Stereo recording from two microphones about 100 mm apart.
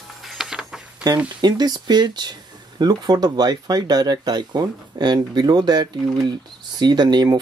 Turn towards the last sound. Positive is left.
turn(degrees=-45)  # may be behind; listen again after turning